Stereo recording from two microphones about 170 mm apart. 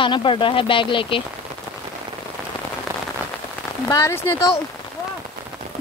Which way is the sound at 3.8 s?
15° left (ahead or behind).